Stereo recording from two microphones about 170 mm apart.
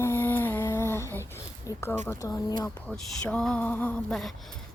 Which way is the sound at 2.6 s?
5° left (ahead or behind).